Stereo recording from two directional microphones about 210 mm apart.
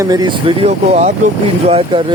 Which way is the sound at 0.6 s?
35° right (ahead or behind).